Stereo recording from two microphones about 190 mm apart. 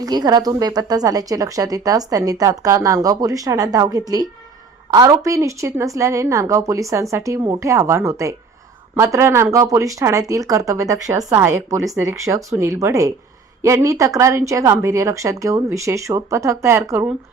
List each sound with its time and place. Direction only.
0.0 s a woman's voice: 20° right (ahead or behind)